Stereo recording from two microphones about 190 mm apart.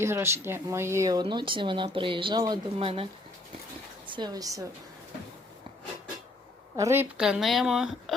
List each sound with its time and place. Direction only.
0.0 s speech: 15° right (ahead or behind); by 3.1 s 30° right (ahead or behind)
4.1 s speech: 20° right (ahead or behind)
6.7 s speech: 15° right (ahead or behind)